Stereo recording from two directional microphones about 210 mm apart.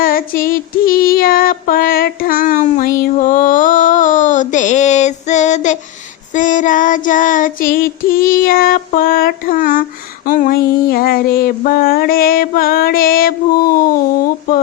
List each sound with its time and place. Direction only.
0.0 s female singing: 45° left (ahead or behind)
6.3 s child singing: 35° left (ahead or behind)
10.2 s a sound: 40° left (ahead or behind)